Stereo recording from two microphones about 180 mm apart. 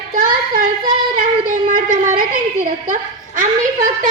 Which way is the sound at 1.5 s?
45° right (ahead or behind).